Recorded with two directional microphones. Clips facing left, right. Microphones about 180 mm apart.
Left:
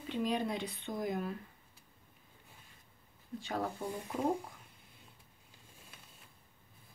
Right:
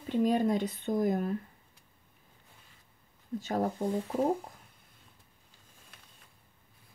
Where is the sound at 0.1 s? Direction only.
45° right (ahead or behind).